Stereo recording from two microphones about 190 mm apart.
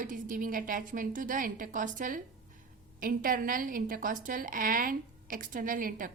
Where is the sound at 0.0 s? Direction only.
45° right (ahead or behind).